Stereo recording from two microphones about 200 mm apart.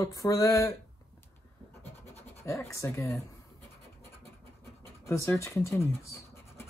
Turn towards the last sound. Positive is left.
turn(degrees=15)  # may be behind; listen again after turning